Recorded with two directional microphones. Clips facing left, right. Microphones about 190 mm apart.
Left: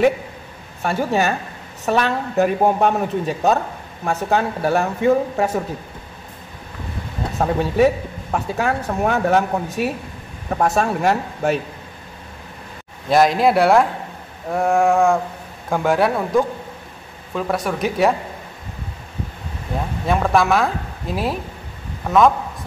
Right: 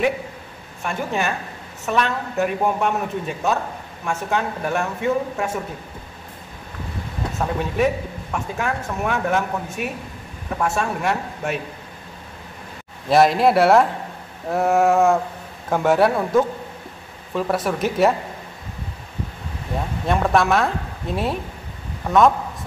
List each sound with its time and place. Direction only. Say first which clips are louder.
0.8 s speech: left 5 dB; 35° left (ahead or behind)
7.3 s speech: left 5 dB; 35° left (ahead or behind)
13.1 s speech: even; centre (ahead or behind)
20.1 s speech: left 1 dB; centre (ahead or behind)